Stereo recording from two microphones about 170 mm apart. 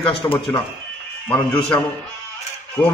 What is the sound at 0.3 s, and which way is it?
Speech, 30° left (ahead or behind).